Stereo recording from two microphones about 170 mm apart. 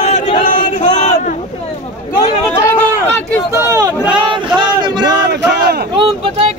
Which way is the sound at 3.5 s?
15° right (ahead or behind).